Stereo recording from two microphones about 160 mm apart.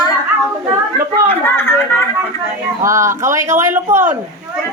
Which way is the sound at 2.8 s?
20° right (ahead or behind).